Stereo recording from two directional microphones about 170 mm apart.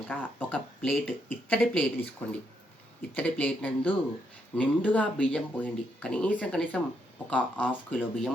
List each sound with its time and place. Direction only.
0.1 s speech: 10° left (ahead or behind)